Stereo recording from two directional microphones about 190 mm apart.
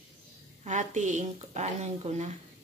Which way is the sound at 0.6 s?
40° right (ahead or behind).